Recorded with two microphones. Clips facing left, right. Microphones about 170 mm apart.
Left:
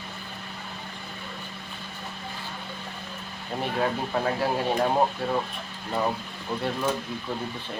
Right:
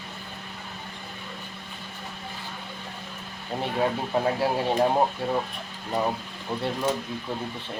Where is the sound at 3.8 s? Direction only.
15° right (ahead or behind).